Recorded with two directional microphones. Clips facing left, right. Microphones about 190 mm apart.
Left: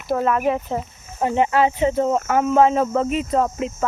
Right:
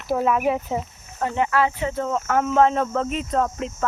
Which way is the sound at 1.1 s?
20° left (ahead or behind).